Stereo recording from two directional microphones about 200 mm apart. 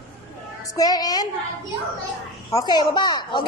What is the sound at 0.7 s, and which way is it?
Speech, 20° left (ahead or behind).